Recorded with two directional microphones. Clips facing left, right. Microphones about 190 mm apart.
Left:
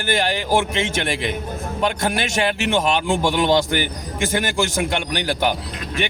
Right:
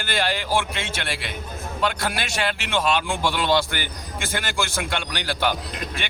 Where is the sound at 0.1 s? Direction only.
20° left (ahead or behind).